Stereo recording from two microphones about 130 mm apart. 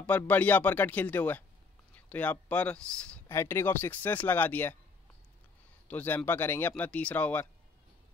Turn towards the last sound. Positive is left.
turn(degrees=10)  # may be behind; listen again after turning